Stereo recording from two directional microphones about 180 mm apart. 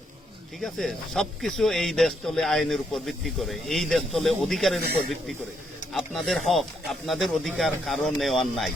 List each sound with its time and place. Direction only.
0.6 s speech: centre (ahead or behind)
5.9 s speech: centre (ahead or behind)